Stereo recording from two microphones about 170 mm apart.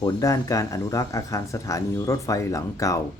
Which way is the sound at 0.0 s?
20° left (ahead or behind).